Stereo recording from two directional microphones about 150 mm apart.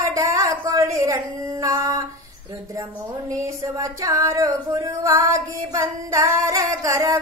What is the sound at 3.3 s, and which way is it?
Female singing, 20° right (ahead or behind).